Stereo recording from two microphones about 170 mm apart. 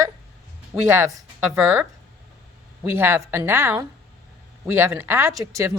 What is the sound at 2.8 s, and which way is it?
A woman's voice, 15° right (ahead or behind).